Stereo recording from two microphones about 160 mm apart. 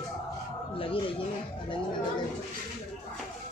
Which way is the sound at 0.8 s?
35° left (ahead or behind).